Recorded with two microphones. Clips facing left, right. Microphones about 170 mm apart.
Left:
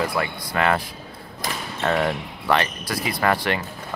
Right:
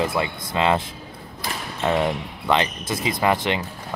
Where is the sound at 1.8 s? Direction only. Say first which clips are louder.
Right 1 dB; 15° right (ahead or behind).